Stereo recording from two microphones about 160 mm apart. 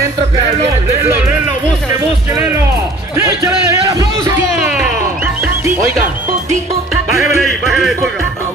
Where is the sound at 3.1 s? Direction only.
20° right (ahead or behind).